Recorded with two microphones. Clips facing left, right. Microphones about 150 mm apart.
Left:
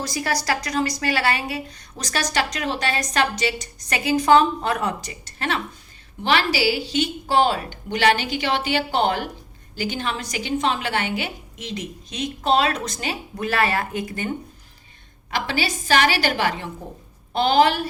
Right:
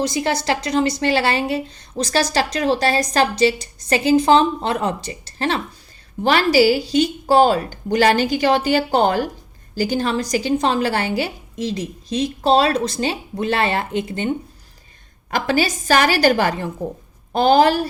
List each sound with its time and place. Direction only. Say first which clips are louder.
0.0 s a woman's voice: right 5 dB; 25° right (ahead or behind)
6.2 s a woman's voice: right 6 dB; 45° right (ahead or behind); by 14.3 s 25° right (ahead or behind)
15.3 s a woman's voice: right 6 dB; 45° right (ahead or behind)